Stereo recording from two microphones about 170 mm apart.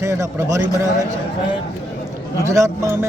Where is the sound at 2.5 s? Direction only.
15° right (ahead or behind).